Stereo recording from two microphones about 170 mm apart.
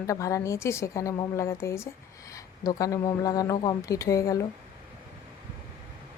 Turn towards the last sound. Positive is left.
turn(degrees=20)  # may be behind; listen again after turning